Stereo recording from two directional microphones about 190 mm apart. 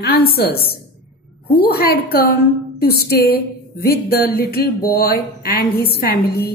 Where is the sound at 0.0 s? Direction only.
55° left (ahead or behind).